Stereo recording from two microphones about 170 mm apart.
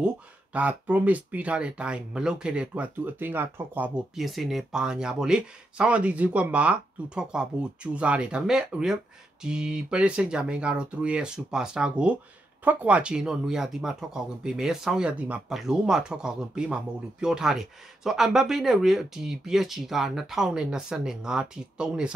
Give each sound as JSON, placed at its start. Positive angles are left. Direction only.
{"t": 0.0, "sound": "speech", "side_deg": -5}